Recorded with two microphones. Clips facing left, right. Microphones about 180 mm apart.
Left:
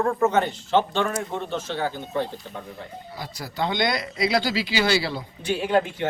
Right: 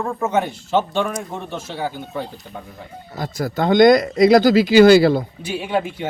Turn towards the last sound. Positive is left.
turn(degrees=-10)  # may be behind; listen again after turning